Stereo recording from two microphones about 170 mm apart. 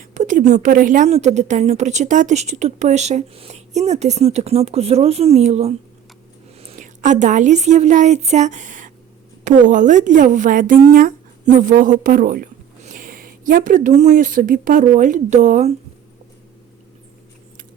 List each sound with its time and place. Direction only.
0.0 s a woman's voice: 45° right (ahead or behind)